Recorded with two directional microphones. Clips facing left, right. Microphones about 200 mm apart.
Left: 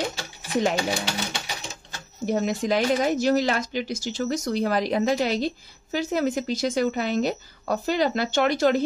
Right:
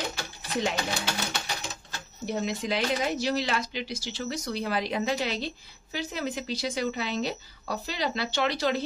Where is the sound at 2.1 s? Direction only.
50° left (ahead or behind).